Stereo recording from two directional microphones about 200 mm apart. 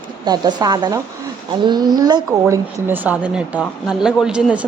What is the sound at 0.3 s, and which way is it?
A woman's voice, 20° right (ahead or behind).